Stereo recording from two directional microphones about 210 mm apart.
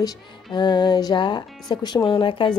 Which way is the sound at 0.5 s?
20° left (ahead or behind).